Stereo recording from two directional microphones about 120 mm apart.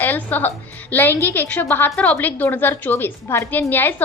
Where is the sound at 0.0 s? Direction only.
15° left (ahead or behind).